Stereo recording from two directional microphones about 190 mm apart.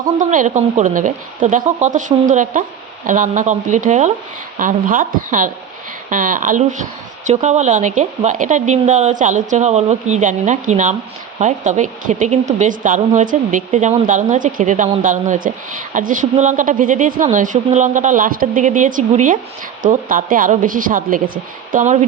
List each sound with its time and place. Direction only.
0.2 s a woman's voice: 40° right (ahead or behind)